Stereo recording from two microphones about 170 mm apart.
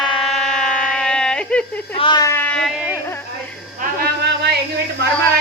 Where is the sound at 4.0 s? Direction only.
70° right (ahead or behind).